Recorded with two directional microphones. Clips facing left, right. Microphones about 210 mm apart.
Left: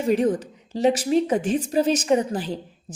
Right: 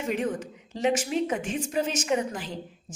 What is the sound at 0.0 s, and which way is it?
A woman's voice, 35° left (ahead or behind).